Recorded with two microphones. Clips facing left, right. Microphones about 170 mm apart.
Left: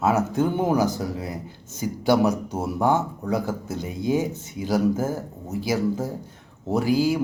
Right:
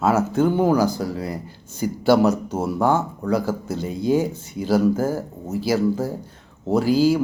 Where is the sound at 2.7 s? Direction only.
20° left (ahead or behind).